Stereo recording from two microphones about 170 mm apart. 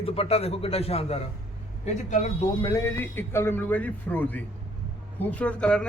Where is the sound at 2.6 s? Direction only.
25° left (ahead or behind).